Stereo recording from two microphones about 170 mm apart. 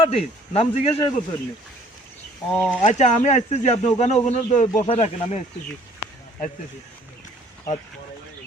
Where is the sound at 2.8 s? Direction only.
45° left (ahead or behind).